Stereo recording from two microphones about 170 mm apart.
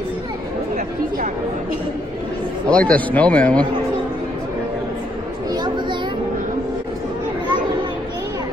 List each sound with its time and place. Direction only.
0.7 s chatter: 55° right (ahead or behind)
2.7 s speech: 5° left (ahead or behind)
5.5 s a sound: 25° right (ahead or behind)